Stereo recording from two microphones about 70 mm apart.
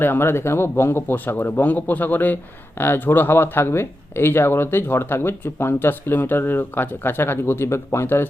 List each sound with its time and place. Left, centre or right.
0.0 s a man's voice: left